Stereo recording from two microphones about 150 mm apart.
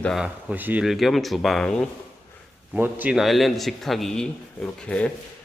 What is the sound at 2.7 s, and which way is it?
A man's voice, 10° right (ahead or behind).